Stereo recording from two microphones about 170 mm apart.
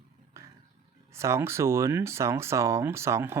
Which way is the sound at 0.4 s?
15° right (ahead or behind).